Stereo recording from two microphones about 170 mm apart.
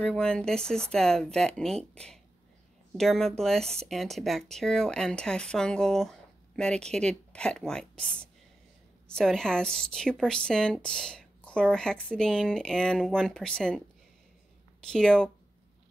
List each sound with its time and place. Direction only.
0.0 s a woman's voice: 5° left (ahead or behind)
14.8 s a woman's voice: 5° left (ahead or behind)